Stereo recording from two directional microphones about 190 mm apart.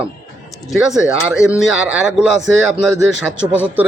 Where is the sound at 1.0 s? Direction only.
5° right (ahead or behind).